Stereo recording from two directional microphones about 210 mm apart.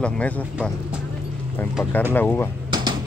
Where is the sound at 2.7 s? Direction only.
20° right (ahead or behind).